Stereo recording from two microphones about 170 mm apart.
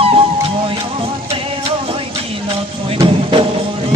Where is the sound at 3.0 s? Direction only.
35° right (ahead or behind).